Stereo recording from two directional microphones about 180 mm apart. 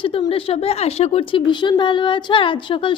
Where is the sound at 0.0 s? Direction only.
30° left (ahead or behind).